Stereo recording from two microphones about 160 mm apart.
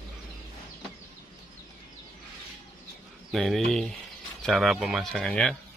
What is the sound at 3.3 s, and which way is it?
Speech, centre (ahead or behind).